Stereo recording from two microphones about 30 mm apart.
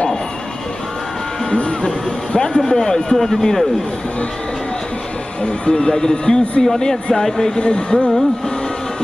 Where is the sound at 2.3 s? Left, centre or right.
Left.